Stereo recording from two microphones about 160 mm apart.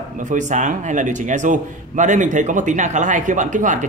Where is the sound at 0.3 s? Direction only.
50° right (ahead or behind).